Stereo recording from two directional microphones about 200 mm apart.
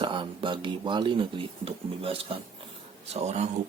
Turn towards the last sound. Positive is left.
turn(degrees=-35)  # may be behind; listen again after turning